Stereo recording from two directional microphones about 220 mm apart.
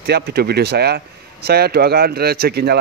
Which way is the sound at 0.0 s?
45° right (ahead or behind).